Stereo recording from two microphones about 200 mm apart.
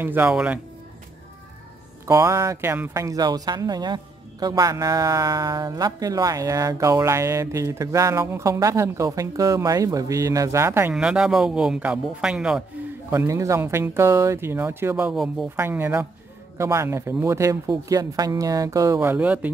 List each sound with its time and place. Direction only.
0.0 s speech: 10° right (ahead or behind)
2.0 s speech: 15° right (ahead or behind)
13.1 s speech: 15° right (ahead or behind)